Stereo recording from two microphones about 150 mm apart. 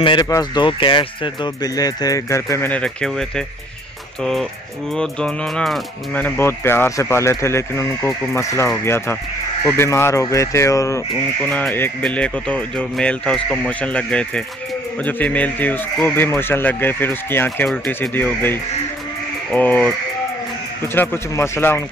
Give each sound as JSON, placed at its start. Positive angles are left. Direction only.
{"t": 0.0, "sound": "speech", "side_deg": 30}
{"t": 20.9, "sound": "speech", "side_deg": 15}